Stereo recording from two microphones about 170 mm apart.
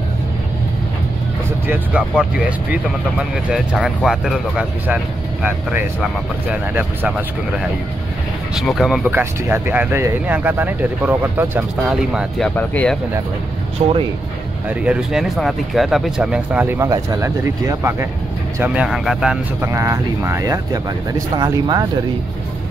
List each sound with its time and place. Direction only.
1.7 s speech: 10° right (ahead or behind)
13.8 s speech: 40° right (ahead or behind)
14.7 s speech: 5° right (ahead or behind)
19.6 s speech: 15° right (ahead or behind)